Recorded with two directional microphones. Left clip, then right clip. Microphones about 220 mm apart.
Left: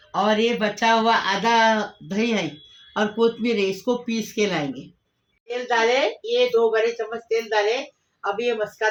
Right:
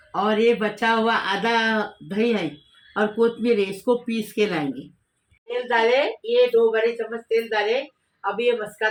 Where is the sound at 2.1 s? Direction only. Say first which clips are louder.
Right 1 dB; 25° left (ahead or behind).